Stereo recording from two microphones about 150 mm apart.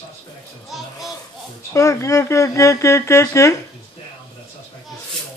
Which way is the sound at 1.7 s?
20° left (ahead or behind).